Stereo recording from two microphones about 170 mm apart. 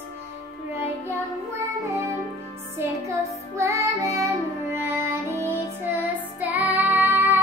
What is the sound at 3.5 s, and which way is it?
Music, 20° right (ahead or behind).